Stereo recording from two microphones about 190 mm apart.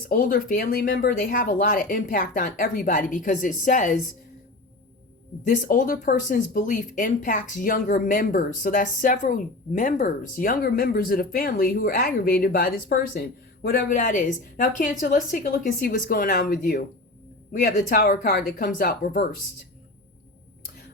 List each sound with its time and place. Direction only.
0.1 s speech: 50° left (ahead or behind)
5.5 s speech: 45° left (ahead or behind)